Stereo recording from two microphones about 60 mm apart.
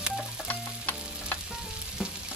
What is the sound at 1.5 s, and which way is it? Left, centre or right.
Frying, centre.